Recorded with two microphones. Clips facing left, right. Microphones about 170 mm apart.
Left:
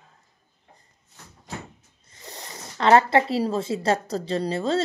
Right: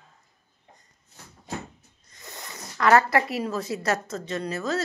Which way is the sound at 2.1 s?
30° left (ahead or behind).